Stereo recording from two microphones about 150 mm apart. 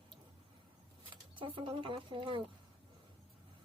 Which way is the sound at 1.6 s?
35° right (ahead or behind).